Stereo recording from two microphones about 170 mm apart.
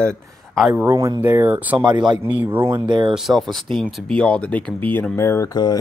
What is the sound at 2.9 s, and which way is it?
Speech, 25° right (ahead or behind).